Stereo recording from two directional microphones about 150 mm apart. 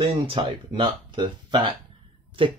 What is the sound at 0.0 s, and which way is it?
Speech, 35° right (ahead or behind).